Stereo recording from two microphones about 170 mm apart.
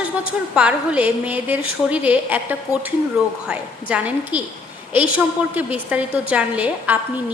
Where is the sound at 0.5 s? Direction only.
5° right (ahead or behind).